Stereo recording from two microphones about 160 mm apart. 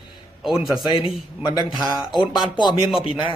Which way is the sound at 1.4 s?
30° left (ahead or behind).